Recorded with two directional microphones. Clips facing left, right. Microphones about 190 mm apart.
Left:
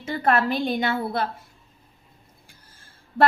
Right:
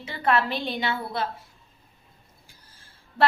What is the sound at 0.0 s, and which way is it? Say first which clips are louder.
Speech: left 2 dB; 45° left (ahead or behind).